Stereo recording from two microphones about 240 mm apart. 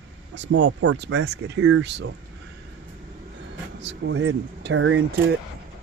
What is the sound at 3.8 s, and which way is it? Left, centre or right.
Speech, right.